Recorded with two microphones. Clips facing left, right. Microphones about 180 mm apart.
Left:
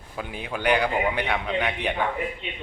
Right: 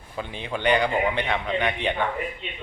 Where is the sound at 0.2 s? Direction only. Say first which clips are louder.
Right 1 dB; 5° left (ahead or behind).